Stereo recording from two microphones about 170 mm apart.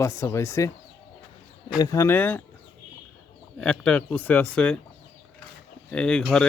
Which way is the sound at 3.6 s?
5° left (ahead or behind).